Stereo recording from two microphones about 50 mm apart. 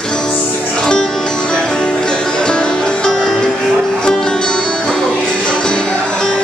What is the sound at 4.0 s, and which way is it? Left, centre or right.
Music, centre.